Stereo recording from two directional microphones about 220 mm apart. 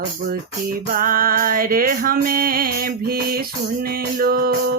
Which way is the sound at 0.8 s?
40° right (ahead or behind).